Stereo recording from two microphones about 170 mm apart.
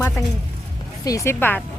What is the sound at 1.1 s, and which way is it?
Speech, 15° left (ahead or behind).